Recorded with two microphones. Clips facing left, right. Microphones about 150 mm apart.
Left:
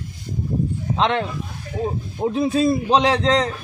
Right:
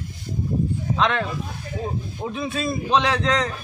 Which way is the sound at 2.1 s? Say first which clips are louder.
Left 10 dB; 40° left (ahead or behind).